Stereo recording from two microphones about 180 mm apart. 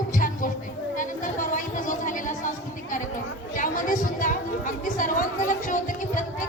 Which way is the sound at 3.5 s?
50° left (ahead or behind).